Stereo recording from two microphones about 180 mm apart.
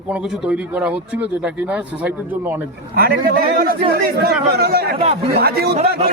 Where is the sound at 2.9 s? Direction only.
55° right (ahead or behind).